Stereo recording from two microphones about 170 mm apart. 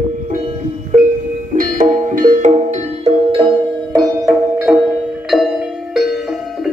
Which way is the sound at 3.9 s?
20° right (ahead or behind).